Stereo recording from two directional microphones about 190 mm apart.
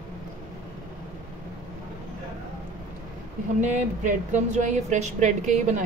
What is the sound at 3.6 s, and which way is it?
A woman's voice, 40° right (ahead or behind).